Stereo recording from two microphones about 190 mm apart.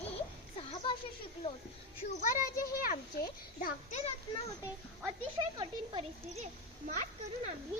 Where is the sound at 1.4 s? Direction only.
25° left (ahead or behind).